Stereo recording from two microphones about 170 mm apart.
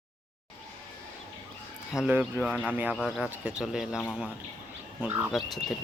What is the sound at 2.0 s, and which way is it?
Speech, 10° right (ahead or behind).